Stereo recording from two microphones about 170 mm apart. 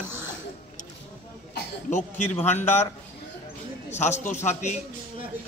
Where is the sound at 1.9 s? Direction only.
45° left (ahead or behind).